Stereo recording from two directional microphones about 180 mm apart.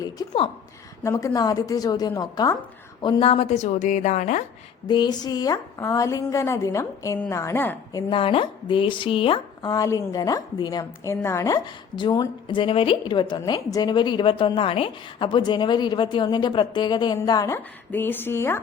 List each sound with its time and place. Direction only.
1.0 s a woman's voice: 15° left (ahead or behind); by 4.4 s 45° left (ahead or behind)
4.9 s a woman's voice: 25° left (ahead or behind)
8.1 s a woman's voice: 30° left (ahead or behind); by 18.6 s 15° left (ahead or behind)